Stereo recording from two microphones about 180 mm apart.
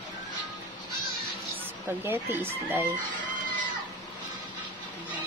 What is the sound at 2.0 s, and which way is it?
Speech, 15° right (ahead or behind).